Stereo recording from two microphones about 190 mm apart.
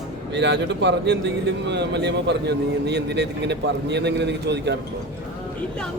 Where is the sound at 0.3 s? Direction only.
65° right (ahead or behind).